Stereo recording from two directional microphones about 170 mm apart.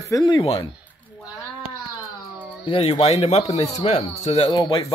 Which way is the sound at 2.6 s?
35° left (ahead or behind).